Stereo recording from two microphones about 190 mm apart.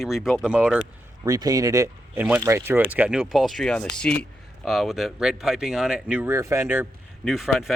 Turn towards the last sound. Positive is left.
turn(degrees=0)  # may be behind; listen again after turning